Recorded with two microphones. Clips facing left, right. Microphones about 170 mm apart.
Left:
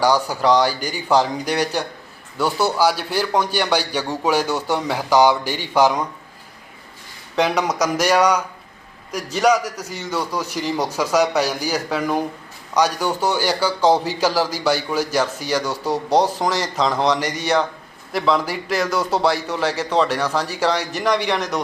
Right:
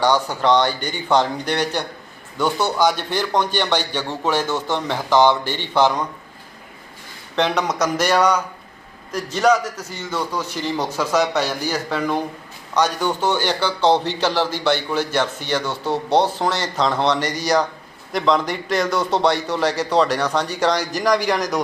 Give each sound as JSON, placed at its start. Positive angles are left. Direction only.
{"t": 0.0, "sound": "a man's voice", "side_deg": 10}
{"t": 7.3, "sound": "a man's voice", "side_deg": 10}
{"t": 17.2, "sound": "speech", "side_deg": -35}
{"t": 18.1, "sound": "a man's voice", "side_deg": 5}